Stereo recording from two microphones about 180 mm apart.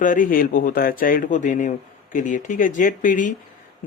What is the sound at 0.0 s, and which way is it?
Speech, 50° left (ahead or behind).